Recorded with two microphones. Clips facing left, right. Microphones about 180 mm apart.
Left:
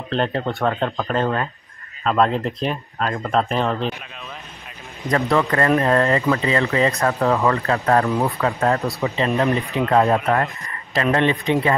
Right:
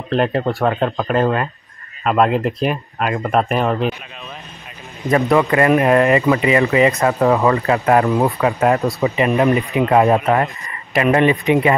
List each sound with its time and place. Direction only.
0.1 s speech: 5° right (ahead or behind)
5.1 s speech: 15° right (ahead or behind)